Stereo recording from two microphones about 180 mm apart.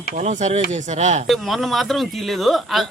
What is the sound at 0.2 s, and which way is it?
Speech, 40° right (ahead or behind).